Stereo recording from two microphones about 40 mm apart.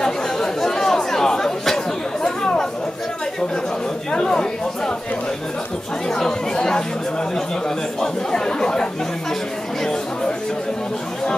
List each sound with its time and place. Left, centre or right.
0.0 s chatter: centre
4.1 s chatter: centre
6.1 s chatter: centre
8.0 s speech: centre